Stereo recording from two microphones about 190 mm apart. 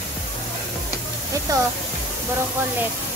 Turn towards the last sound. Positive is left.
turn(degrees=-20)  # may be behind; listen again after turning